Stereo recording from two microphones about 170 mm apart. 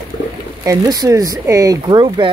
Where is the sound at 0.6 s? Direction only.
20° right (ahead or behind).